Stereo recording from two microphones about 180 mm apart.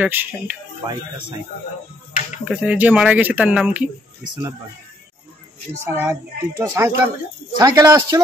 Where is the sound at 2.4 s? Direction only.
5° right (ahead or behind).